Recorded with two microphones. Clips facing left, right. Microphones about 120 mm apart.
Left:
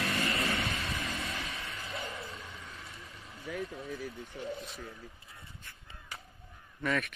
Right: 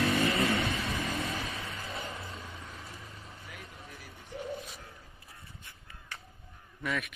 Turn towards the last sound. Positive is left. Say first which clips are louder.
# left 2 dB
turn(degrees=-5)  # may be behind; listen again after turning